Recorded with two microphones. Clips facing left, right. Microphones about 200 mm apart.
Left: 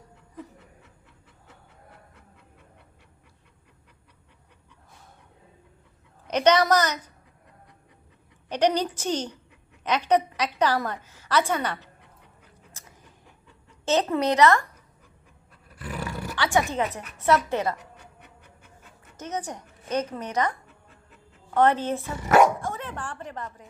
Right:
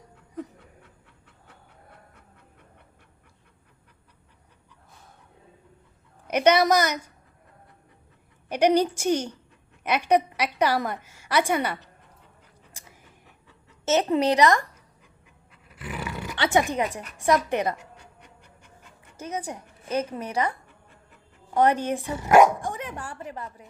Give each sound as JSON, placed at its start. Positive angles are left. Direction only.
{"t": 6.2, "sound": "a woman's voice", "side_deg": -10}
{"t": 8.4, "sound": "a woman's voice", "side_deg": -10}
{"t": 13.8, "sound": "a woman's voice", "side_deg": -25}
{"t": 15.7, "sound": "roar", "side_deg": 40}
{"t": 16.3, "sound": "a woman's voice", "side_deg": -20}
{"t": 19.2, "sound": "a woman's voice", "side_deg": -10}